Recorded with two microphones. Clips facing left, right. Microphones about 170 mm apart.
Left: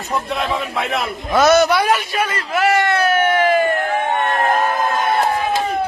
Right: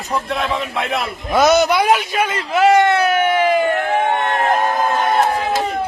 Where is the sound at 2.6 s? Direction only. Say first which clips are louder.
Right 4 dB; 20° right (ahead or behind).